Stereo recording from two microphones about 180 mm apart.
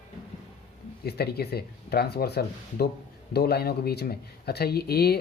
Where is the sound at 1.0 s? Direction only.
60° left (ahead or behind).